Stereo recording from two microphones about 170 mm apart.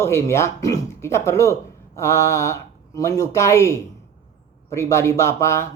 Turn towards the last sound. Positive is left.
turn(degrees=15)  # may be behind; listen again after turning